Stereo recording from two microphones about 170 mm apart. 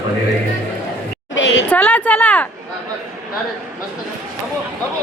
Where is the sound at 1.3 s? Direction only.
90° left.